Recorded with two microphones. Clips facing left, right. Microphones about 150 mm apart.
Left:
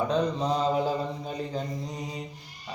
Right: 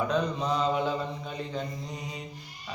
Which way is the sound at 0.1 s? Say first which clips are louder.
Left 2 dB; 30° left (ahead or behind).